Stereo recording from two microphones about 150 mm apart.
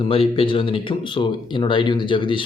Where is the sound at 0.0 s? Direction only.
35° left (ahead or behind).